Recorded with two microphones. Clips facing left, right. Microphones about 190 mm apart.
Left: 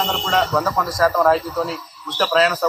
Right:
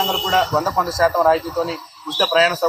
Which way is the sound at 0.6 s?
25° right (ahead or behind).